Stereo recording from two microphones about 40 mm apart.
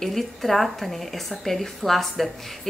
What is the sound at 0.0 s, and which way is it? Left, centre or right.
A woman's voice, centre.